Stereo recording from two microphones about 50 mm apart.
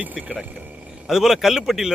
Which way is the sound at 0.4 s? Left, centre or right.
Right.